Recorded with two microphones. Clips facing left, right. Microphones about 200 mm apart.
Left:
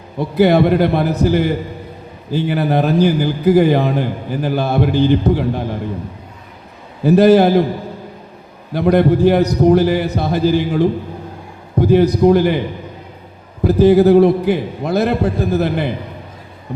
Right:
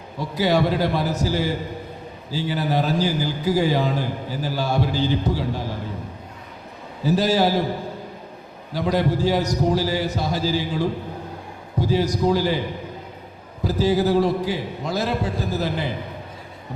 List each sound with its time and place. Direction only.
0.2 s a man's voice: 60° left (ahead or behind)
7.0 s a man's voice: 60° left (ahead or behind)
8.7 s a man's voice: 60° left (ahead or behind)
13.7 s a man's voice: 60° left (ahead or behind)